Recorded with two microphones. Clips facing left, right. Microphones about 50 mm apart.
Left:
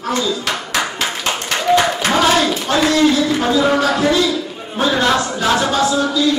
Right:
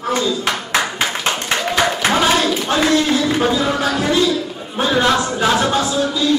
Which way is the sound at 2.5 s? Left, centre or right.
Right.